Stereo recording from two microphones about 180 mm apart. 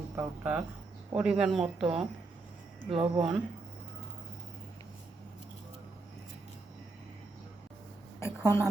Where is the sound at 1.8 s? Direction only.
30° right (ahead or behind).